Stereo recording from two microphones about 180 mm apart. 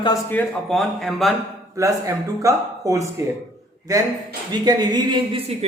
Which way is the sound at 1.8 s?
15° right (ahead or behind).